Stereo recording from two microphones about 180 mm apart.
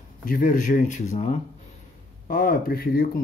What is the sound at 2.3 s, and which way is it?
Speech, 55° left (ahead or behind).